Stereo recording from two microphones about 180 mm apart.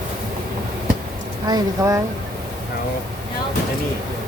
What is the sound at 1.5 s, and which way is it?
Speech, 20° right (ahead or behind).